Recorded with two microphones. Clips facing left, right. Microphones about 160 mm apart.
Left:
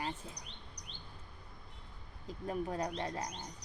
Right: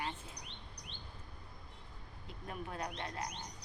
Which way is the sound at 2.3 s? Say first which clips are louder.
Left 7 dB; 35° left (ahead or behind).